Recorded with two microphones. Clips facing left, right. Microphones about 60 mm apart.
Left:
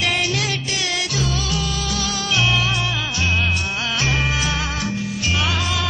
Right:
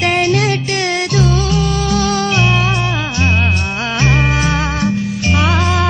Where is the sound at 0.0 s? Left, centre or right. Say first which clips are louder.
Right 8 dB; right.